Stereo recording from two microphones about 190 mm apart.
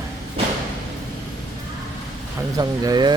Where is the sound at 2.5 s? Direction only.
20° right (ahead or behind).